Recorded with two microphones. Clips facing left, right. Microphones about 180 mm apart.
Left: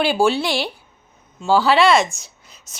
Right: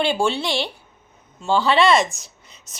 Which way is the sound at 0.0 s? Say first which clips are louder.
Left 3 dB; 5° left (ahead or behind).